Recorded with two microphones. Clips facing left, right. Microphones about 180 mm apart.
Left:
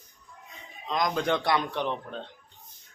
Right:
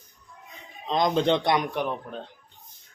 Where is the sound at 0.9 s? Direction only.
25° right (ahead or behind); by 2.2 s 10° right (ahead or behind).